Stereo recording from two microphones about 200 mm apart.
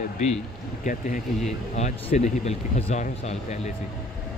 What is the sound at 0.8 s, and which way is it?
Speech, 40° left (ahead or behind).